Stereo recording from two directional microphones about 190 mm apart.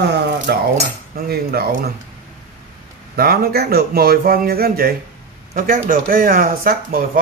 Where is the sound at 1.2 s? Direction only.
55° right (ahead or behind).